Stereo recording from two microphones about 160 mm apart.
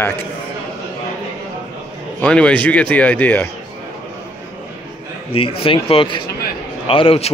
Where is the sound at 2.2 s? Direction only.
5° left (ahead or behind).